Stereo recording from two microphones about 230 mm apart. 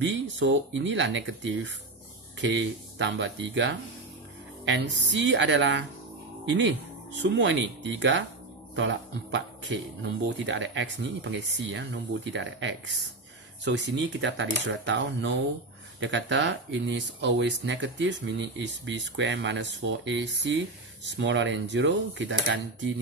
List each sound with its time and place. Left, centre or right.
0.0 s speech: right